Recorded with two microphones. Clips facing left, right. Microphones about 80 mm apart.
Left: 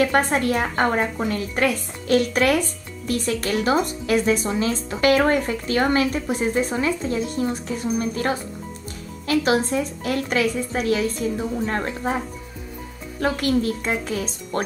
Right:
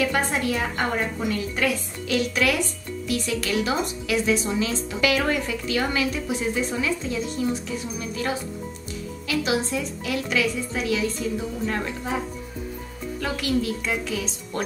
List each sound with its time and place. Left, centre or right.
0.0 s speech: left
13.2 s speech: left